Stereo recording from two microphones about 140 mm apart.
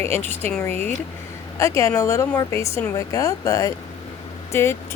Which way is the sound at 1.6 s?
20° left (ahead or behind).